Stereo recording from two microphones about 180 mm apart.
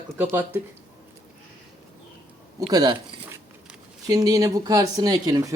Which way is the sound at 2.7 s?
20° right (ahead or behind).